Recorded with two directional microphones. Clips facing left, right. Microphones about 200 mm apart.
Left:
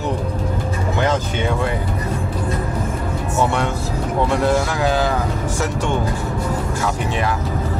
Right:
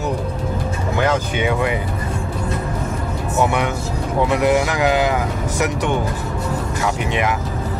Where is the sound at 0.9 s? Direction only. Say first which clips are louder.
Right 2 dB; 10° right (ahead or behind).